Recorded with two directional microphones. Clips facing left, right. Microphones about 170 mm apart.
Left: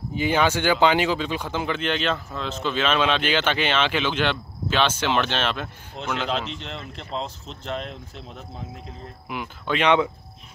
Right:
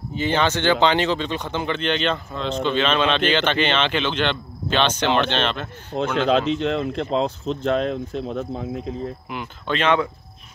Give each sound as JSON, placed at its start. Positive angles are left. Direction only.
{"t": 0.1, "sound": "speech", "side_deg": 10}
{"t": 5.9, "sound": "speech", "side_deg": -90}
{"t": 6.6, "sound": "speech", "side_deg": -60}
{"t": 9.3, "sound": "speech", "side_deg": 10}